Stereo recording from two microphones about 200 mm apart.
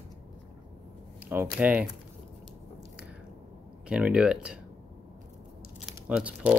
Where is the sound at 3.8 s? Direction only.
5° right (ahead or behind).